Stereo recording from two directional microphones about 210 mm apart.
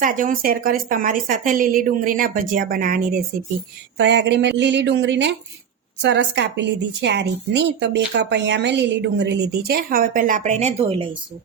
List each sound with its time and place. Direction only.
0.0 s a woman's voice: 40° right (ahead or behind)
3.9 s a woman's voice: 55° right (ahead or behind); by 11.2 s 25° right (ahead or behind)